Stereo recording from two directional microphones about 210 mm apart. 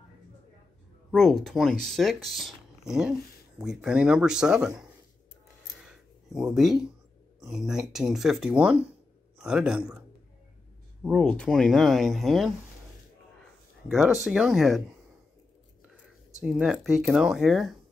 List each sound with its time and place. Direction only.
1.1 s speech: centre (ahead or behind)
5.8 s a sound: centre (ahead or behind)
7.4 s speech: 5° right (ahead or behind)
13.8 s speech: 5° right (ahead or behind)
15.8 s speech: 5° right (ahead or behind)